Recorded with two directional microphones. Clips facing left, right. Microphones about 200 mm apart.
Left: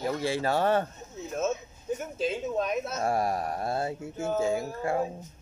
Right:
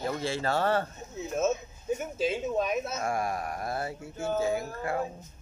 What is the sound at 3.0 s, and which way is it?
Speech, 35° left (ahead or behind).